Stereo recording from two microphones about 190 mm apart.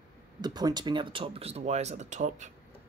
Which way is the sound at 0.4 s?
20° right (ahead or behind).